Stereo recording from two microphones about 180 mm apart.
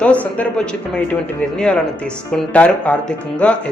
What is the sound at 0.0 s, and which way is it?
Speech, 10° left (ahead or behind).